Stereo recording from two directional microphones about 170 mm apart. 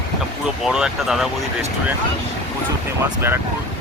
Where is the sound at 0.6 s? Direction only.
5° right (ahead or behind).